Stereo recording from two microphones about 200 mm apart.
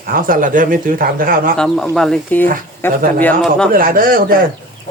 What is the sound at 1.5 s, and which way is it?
Speech, centre (ahead or behind).